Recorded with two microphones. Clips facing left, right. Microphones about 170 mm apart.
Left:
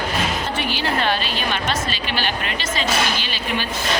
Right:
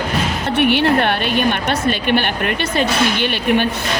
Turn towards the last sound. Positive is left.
turn(degrees=-60)  # may be behind; listen again after turning